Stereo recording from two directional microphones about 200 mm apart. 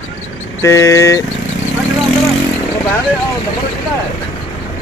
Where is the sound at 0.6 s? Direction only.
15° left (ahead or behind).